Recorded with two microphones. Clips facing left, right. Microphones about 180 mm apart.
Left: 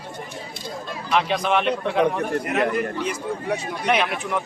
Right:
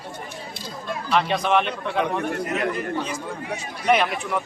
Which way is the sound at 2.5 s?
60° left (ahead or behind).